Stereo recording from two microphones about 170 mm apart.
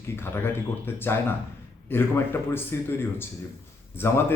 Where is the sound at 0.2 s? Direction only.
15° left (ahead or behind).